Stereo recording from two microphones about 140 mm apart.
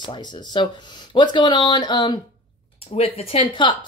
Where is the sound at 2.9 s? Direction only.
45° left (ahead or behind).